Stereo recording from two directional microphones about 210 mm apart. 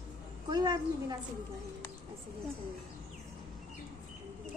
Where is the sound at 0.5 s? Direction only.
20° right (ahead or behind).